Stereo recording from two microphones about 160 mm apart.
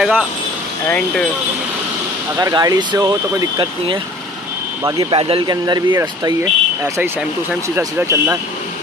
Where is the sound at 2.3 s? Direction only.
20° right (ahead or behind).